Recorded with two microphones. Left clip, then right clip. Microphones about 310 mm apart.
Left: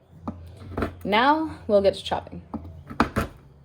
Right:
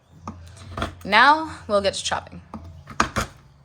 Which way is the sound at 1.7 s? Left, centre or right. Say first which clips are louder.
Left 2 dB; right.